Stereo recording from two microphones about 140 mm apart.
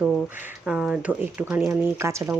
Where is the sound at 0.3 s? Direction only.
10° right (ahead or behind).